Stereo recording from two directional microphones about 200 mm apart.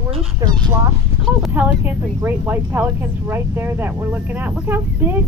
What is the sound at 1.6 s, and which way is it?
Speech, 10° right (ahead or behind).